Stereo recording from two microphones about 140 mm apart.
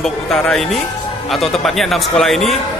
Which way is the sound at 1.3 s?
Centre (ahead or behind).